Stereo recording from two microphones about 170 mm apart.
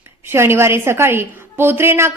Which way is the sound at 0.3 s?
15° right (ahead or behind).